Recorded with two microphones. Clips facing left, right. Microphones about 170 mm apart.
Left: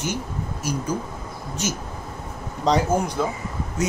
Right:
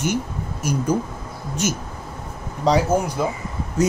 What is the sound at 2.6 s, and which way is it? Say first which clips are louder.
Speech: right 2 dB; 5° right (ahead or behind).